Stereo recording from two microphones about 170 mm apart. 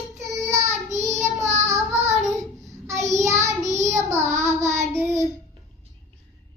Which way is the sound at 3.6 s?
45° right (ahead or behind).